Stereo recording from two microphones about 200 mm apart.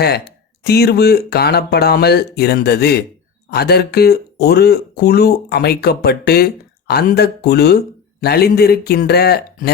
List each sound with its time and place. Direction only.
0.0 s speech: 55° left (ahead or behind)